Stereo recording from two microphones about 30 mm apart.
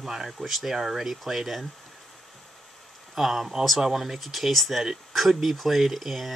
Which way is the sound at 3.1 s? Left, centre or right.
Centre.